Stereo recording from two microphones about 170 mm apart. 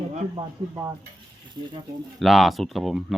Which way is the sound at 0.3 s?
20° right (ahead or behind).